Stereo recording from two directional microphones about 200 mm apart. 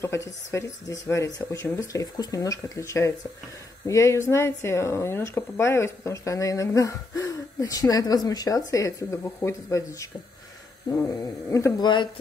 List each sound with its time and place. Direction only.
0.0 s speech: 15° left (ahead or behind)